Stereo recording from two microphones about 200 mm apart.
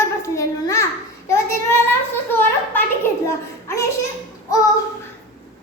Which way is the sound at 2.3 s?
10° left (ahead or behind).